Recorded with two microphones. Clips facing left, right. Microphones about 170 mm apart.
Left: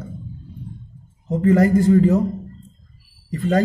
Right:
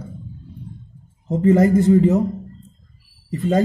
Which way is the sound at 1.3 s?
25° right (ahead or behind).